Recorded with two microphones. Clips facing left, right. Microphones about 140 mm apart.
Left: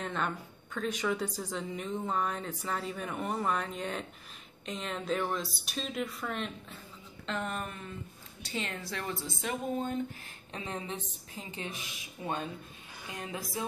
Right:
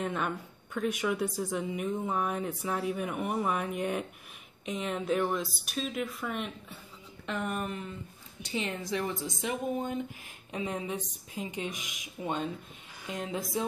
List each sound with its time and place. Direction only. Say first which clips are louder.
0.0 s speech: right 2 dB; 10° right (ahead or behind)